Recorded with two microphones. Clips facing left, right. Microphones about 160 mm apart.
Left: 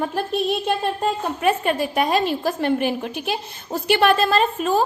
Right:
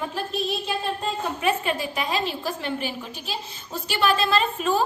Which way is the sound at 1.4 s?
50° left (ahead or behind).